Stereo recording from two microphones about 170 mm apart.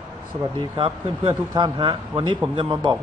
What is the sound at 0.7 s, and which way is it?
Speech, 30° right (ahead or behind).